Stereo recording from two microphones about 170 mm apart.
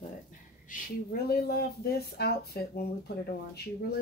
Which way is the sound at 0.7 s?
60° left (ahead or behind).